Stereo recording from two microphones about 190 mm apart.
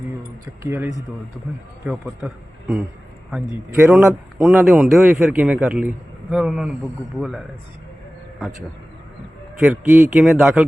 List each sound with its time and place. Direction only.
0.4 s a man's voice: 15° right (ahead or behind)
4.8 s a man's voice: centre (ahead or behind)
9.6 s a man's voice: centre (ahead or behind)